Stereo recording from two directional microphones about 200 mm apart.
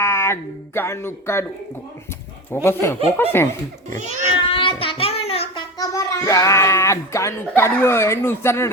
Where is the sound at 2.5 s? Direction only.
10° left (ahead or behind).